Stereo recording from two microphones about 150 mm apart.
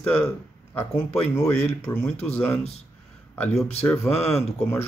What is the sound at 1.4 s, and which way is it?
Speech, 15° left (ahead or behind).